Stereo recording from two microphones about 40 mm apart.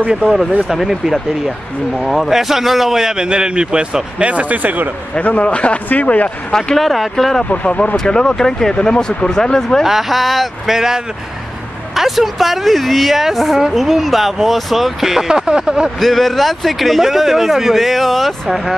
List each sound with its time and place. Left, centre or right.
0.7 s a man's voice: centre; by 4.8 s right
5.1 s a man's voice: left
5.9 s a man's voice: left
6.8 s speech: centre
7.5 s a man's voice: left
7.9 s speech: centre
9.8 s speech: centre
10.7 s a man's voice: centre
13.8 s a man's voice: centre
16.0 s speech: centre